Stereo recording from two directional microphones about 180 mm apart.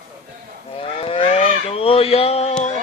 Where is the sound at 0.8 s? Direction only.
30° left (ahead or behind).